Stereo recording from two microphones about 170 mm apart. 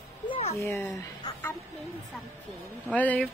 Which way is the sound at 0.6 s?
10° left (ahead or behind).